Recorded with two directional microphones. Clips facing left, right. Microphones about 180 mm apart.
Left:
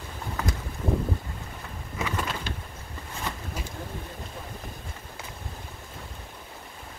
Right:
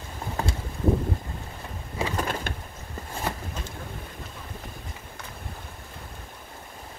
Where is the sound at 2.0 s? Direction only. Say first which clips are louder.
Right 2 dB; 30° right (ahead or behind).